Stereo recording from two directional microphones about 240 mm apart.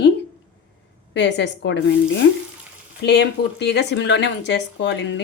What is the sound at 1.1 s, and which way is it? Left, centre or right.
Speech, left.